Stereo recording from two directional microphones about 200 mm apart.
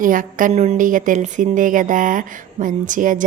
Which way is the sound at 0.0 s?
40° right (ahead or behind).